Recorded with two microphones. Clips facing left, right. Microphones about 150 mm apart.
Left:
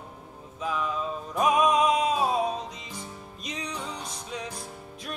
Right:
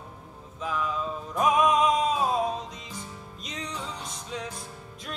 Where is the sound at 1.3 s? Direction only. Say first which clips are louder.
Even; 15° left (ahead or behind).